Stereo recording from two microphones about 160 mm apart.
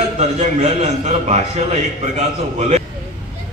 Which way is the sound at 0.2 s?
45° right (ahead or behind).